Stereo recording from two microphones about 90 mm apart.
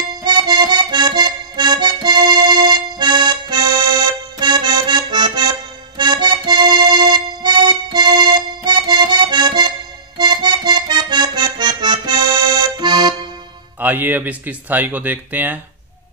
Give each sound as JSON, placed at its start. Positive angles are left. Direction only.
{"t": 0.2, "sound": "music", "side_deg": -55}
{"t": 10.1, "sound": "accordion", "side_deg": -50}
{"t": 13.7, "sound": "speech", "side_deg": -20}